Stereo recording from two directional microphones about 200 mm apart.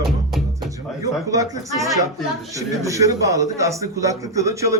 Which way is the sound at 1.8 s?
15° right (ahead or behind).